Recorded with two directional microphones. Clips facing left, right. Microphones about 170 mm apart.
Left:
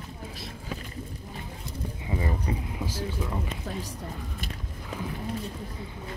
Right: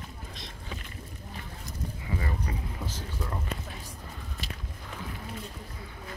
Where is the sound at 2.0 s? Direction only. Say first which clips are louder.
Left 5 dB; 20° left (ahead or behind).